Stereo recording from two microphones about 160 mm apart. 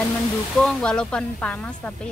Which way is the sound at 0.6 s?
5° left (ahead or behind).